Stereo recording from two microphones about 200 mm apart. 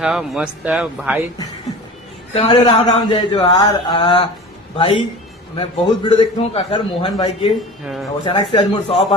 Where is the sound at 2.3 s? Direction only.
30° left (ahead or behind).